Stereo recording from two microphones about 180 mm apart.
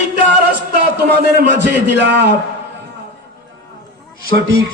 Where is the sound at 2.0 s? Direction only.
75° right (ahead or behind).